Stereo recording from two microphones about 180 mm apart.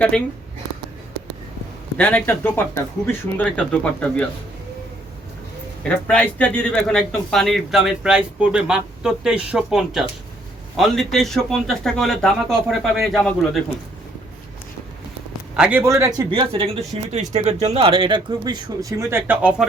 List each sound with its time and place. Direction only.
2.0 s speech: 10° left (ahead or behind)
6.1 s speech: 5° left (ahead or behind)
15.5 s speech: 5° right (ahead or behind)